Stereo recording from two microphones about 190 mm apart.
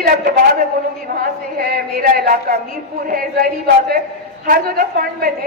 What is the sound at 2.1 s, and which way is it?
A woman's voice, 50° right (ahead or behind).